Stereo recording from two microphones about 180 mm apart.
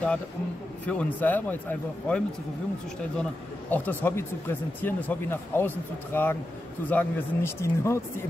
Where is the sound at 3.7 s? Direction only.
10° left (ahead or behind).